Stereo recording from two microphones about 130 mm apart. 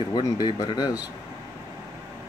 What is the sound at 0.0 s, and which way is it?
Speech, 35° left (ahead or behind).